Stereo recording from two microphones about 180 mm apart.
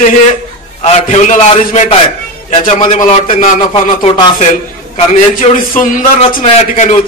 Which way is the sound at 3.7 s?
30° left (ahead or behind).